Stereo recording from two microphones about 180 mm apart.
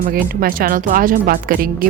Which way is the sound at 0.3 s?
50° right (ahead or behind).